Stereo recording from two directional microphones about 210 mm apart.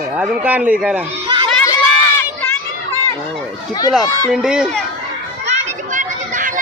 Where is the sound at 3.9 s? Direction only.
5° right (ahead or behind).